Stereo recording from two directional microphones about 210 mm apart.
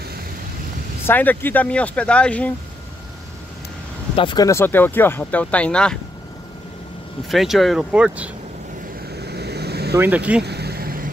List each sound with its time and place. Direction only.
1.0 s speech: 10° left (ahead or behind)
4.2 s speech: 20° left (ahead or behind); by 5.9 s 5° left (ahead or behind)
7.2 s speech: centre (ahead or behind)
9.1 s vehicle: 50° right (ahead or behind)
9.9 s speech: 10° right (ahead or behind)
10.4 s vehicle: 50° right (ahead or behind)